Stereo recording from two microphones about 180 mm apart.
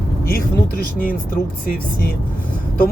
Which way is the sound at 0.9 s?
50° left (ahead or behind).